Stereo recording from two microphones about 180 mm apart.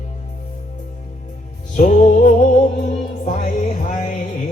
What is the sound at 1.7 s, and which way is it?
Music, 40° left (ahead or behind).